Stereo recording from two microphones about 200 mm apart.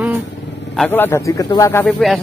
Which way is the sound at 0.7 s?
5° left (ahead or behind).